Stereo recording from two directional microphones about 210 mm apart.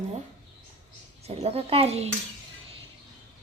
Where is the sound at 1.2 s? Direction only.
30° right (ahead or behind).